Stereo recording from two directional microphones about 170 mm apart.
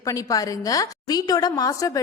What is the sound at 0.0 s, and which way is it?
A woman's voice, 20° left (ahead or behind).